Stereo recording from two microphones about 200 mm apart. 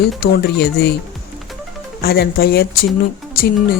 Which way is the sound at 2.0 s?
50° left (ahead or behind).